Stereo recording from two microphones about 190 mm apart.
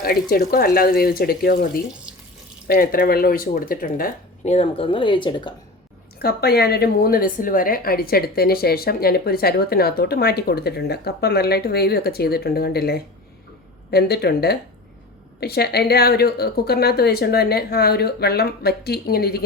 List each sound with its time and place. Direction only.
0.0 s speech: 55° left (ahead or behind)
4.5 s speech: 30° left (ahead or behind)
6.1 s a woman's voice: 55° left (ahead or behind)